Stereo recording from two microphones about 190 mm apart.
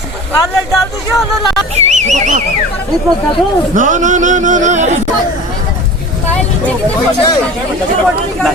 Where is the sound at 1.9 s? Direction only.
40° right (ahead or behind).